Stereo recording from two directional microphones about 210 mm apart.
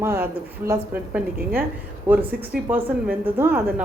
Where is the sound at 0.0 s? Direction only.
10° right (ahead or behind).